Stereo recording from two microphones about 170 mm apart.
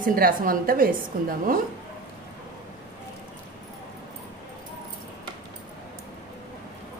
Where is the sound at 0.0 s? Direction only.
60° right (ahead or behind).